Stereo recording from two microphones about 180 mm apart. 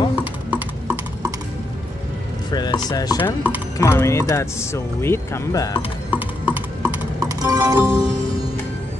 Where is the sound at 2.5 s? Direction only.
20° left (ahead or behind).